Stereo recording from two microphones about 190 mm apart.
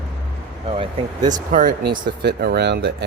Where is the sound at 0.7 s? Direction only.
25° right (ahead or behind).